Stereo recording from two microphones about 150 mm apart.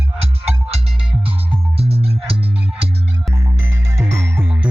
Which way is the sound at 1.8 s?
40° right (ahead or behind).